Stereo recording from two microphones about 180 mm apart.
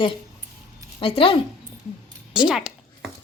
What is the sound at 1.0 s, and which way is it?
Speech, 30° left (ahead or behind).